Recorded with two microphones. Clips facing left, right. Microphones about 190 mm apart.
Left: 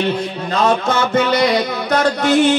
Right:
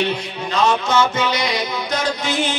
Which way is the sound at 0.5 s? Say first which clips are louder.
Left 2 dB; 55° left (ahead or behind).